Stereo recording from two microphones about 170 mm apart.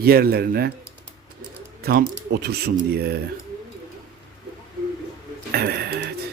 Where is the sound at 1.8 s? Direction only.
60° right (ahead or behind).